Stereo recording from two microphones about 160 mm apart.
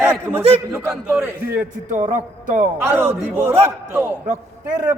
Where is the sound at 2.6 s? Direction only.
15° right (ahead or behind).